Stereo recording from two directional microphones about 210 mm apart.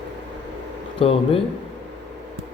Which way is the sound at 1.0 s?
25° left (ahead or behind).